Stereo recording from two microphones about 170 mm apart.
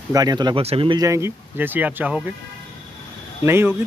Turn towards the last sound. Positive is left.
turn(degrees=-15)  # may be behind; listen again after turning